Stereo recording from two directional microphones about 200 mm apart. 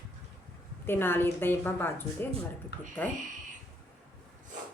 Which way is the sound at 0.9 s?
10° left (ahead or behind).